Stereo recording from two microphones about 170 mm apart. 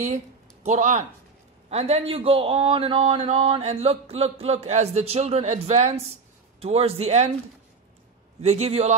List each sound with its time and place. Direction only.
0.7 s a man's voice: 45° right (ahead or behind)
8.4 s a man's voice: 40° right (ahead or behind)